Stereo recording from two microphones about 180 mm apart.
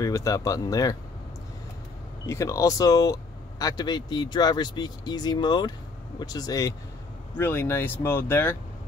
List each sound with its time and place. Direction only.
0.0 s speech: 20° left (ahead or behind)
2.2 s speech: 15° left (ahead or behind)